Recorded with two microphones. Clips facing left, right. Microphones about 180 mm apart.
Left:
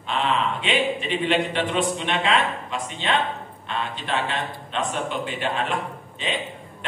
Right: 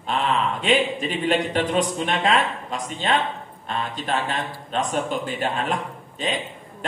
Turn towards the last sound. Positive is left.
turn(degrees=-40)  # may be behind; listen again after turning